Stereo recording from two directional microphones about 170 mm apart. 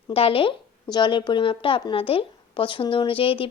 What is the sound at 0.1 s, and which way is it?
A woman's voice, 35° left (ahead or behind).